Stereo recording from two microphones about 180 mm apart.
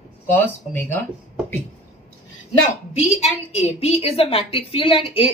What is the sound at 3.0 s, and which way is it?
A woman's voice, 35° left (ahead or behind).